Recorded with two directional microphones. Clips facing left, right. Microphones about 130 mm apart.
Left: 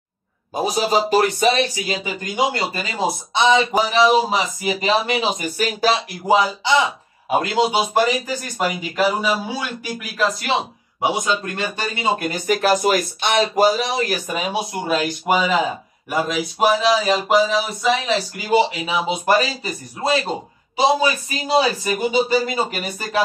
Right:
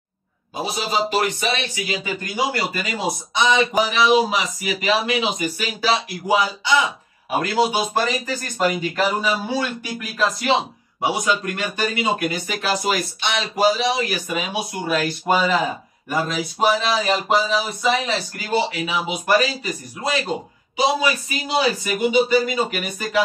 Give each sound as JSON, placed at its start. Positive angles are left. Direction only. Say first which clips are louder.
{"t": 0.6, "sound": "speech", "louder": "left 4 dB", "side_deg": 45}
{"t": 6.6, "sound": "speech", "louder": "left 2 dB", "side_deg": 25}
{"t": 11.0, "sound": "speech", "louder": "left 1 dB", "side_deg": 25}
{"t": 12.4, "sound": "speech", "louder": "left 9 dB", "side_deg": 50}
{"t": 14.9, "sound": "speech", "louder": "even", "side_deg": 20}
{"t": 18.5, "sound": "speech", "louder": "left 4 dB", "side_deg": 25}